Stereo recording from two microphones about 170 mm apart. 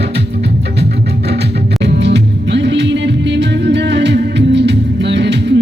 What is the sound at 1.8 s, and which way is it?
Music, 90° right.